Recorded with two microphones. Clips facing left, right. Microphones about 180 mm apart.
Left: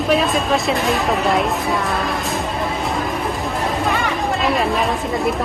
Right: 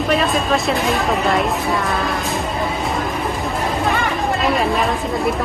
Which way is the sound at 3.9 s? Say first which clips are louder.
Right 1 dB; centre (ahead or behind).